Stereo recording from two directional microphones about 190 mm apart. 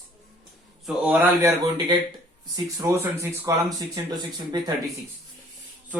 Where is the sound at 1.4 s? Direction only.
20° right (ahead or behind).